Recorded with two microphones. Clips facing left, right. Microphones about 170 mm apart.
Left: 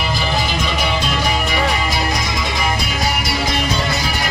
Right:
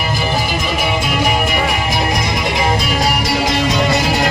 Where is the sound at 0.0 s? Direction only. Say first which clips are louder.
Right 2 dB; 10° right (ahead or behind).